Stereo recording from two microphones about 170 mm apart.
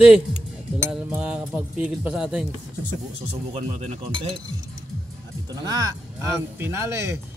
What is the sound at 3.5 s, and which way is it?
Speech, 35° right (ahead or behind).